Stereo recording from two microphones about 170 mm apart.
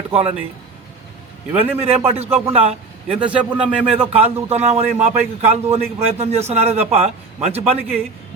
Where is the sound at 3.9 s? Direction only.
35° right (ahead or behind).